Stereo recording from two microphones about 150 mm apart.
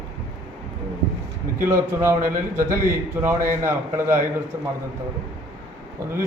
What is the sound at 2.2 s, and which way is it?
Speech, 65° right (ahead or behind).